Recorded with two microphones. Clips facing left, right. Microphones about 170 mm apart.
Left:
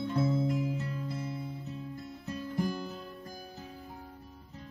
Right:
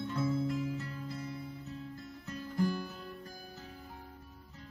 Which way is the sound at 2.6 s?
20° left (ahead or behind).